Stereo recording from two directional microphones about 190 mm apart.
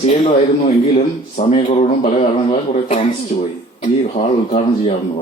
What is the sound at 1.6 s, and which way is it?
Speech, 35° left (ahead or behind).